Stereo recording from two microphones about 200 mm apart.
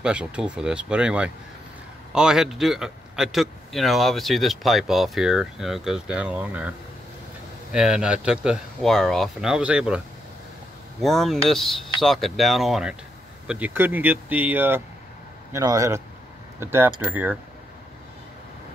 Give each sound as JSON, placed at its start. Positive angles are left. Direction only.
{"t": 0.0, "sound": "speech", "side_deg": -5}
{"t": 7.7, "sound": "speech", "side_deg": -5}